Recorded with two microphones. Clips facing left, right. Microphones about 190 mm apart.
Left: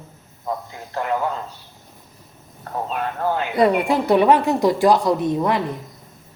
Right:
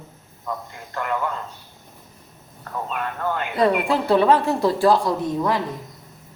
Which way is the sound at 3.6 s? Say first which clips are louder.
Left 2 dB; 15° left (ahead or behind).